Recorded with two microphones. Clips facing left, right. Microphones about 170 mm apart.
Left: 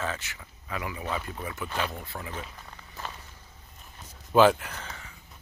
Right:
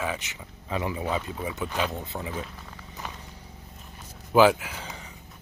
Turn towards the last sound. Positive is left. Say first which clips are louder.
# right 2 dB
turn(degrees=-15)  # may be behind; listen again after turning